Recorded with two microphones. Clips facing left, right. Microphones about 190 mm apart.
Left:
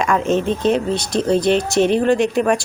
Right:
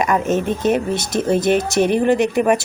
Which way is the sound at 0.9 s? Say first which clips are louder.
Left 1 dB; 20° right (ahead or behind).